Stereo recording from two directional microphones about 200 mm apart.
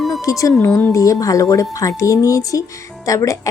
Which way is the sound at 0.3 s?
15° left (ahead or behind).